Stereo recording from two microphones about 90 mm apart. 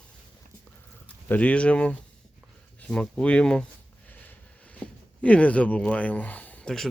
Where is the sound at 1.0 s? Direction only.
15° left (ahead or behind).